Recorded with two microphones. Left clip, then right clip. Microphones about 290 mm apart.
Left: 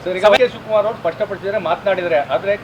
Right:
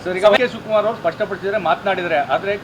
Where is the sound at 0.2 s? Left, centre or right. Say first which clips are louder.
Left 1 dB; left.